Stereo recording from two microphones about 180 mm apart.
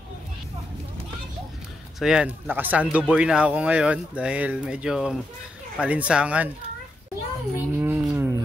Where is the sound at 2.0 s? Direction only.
5° right (ahead or behind).